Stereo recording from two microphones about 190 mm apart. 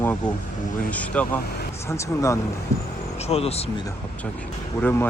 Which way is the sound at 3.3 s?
35° left (ahead or behind).